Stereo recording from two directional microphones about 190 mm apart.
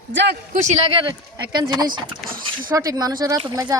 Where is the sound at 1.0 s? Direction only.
25° right (ahead or behind).